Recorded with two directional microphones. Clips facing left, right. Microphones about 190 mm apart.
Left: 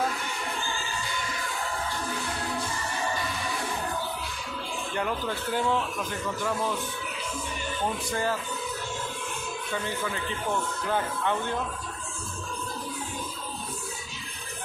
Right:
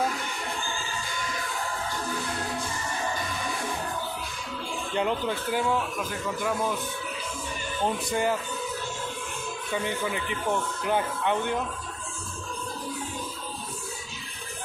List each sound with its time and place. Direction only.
4.9 s a man's voice: 20° right (ahead or behind)
8.1 s a man's voice: 15° right (ahead or behind)
9.8 s a man's voice: 15° right (ahead or behind)